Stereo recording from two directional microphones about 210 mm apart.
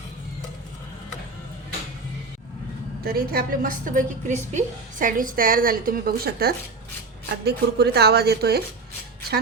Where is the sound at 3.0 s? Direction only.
45° right (ahead or behind).